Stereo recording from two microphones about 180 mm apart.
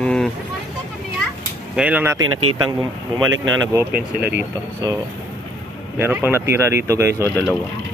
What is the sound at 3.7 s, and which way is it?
Speech, 10° right (ahead or behind).